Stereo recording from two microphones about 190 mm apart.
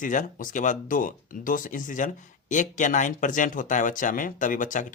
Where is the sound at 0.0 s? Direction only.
45° left (ahead or behind).